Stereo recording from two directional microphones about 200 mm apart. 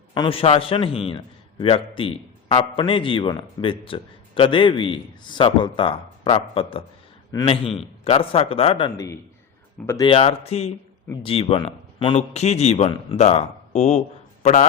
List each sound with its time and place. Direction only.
0.1 s a man's voice: 25° left (ahead or behind)
9.8 s speech: 10° left (ahead or behind)
10.1 s a man's voice: 30° left (ahead or behind)